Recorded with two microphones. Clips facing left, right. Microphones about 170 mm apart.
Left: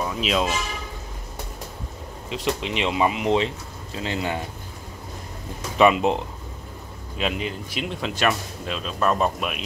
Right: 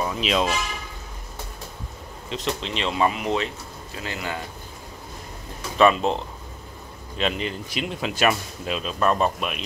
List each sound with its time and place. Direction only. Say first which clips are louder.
0.0 s speech: even; centre (ahead or behind)
2.2 s speech: left 2 dB; 10° left (ahead or behind)
5.8 s speech: left 1 dB; 15° left (ahead or behind)